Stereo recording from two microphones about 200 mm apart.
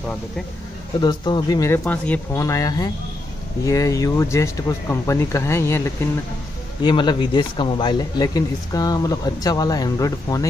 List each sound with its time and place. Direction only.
1.0 s speech: 20° left (ahead or behind)
6.8 s speech: 25° left (ahead or behind)